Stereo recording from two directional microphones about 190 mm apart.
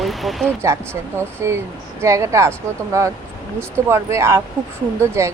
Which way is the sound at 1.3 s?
15° right (ahead or behind).